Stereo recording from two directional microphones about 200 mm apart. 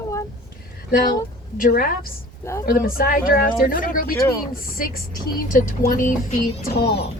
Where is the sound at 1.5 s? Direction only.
45° left (ahead or behind).